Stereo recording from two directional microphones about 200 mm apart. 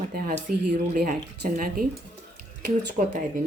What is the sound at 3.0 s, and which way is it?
Speech, 40° right (ahead or behind).